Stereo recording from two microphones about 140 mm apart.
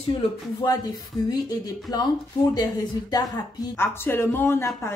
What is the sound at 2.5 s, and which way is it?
Speech, 30° left (ahead or behind).